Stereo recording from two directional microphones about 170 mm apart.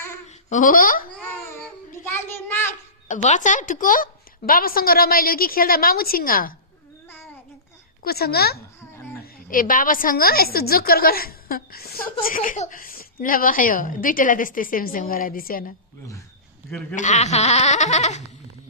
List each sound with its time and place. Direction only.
0.3 s speech: 50° left (ahead or behind)
2.1 s a sound: 15° left (ahead or behind)
3.1 s speech: 45° left (ahead or behind)
8.0 s a woman's voice: 65° left (ahead or behind)
9.2 s speech: 55° left (ahead or behind)
16.9 s speech: 45° left (ahead or behind)